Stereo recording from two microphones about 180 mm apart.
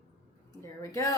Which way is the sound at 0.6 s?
15° left (ahead or behind).